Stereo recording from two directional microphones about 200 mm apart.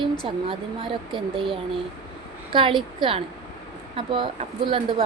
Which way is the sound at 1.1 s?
25° right (ahead or behind).